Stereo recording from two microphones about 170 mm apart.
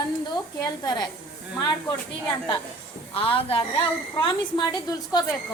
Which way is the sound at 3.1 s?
30° left (ahead or behind).